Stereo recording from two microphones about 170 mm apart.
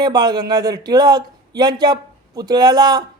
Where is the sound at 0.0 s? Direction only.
25° right (ahead or behind).